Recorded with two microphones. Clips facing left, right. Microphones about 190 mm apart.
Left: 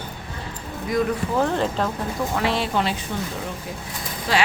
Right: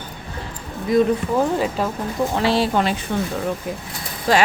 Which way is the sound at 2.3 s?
30° right (ahead or behind).